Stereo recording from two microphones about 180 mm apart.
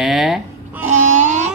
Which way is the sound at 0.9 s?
40° right (ahead or behind).